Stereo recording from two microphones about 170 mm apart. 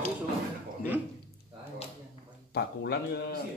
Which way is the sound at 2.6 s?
75° left (ahead or behind).